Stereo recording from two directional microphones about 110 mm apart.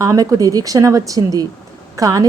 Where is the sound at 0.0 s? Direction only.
30° right (ahead or behind).